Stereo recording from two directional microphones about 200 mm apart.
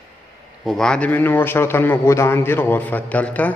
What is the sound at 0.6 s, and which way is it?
A man's voice, centre (ahead or behind).